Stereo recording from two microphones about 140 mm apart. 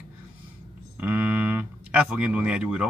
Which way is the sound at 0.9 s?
10° right (ahead or behind).